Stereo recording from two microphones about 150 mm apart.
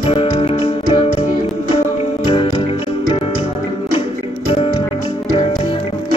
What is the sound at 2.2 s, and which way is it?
Music, 35° left (ahead or behind).